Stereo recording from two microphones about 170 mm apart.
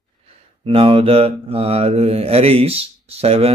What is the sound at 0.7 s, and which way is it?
Mantra, 35° right (ahead or behind).